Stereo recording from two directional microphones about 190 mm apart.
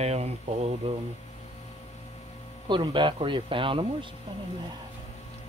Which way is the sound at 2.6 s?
25° right (ahead or behind).